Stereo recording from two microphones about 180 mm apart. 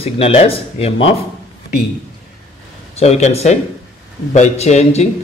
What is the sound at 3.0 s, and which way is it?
Speech, 35° left (ahead or behind).